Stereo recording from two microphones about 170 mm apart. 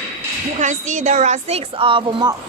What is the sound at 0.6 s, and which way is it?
A woman's voice, 45° right (ahead or behind).